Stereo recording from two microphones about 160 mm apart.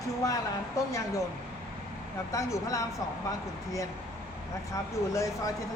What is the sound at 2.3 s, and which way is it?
Speech, 20° left (ahead or behind).